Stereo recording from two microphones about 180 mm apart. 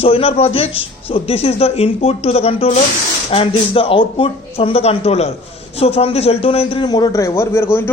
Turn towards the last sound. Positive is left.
turn(degrees=15)  # may be behind; listen again after turning